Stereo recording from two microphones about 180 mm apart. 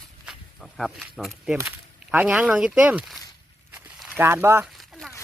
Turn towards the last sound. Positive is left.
turn(degrees=0)  # may be behind; listen again after turning